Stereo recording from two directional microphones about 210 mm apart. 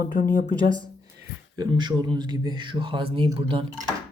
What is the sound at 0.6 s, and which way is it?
Speech, 35° right (ahead or behind).